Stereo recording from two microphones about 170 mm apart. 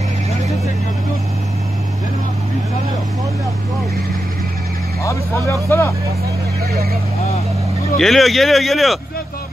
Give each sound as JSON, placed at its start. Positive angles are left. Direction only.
{"t": 5.0, "sound": "speech", "side_deg": 15}
{"t": 8.0, "sound": "speech", "side_deg": 0}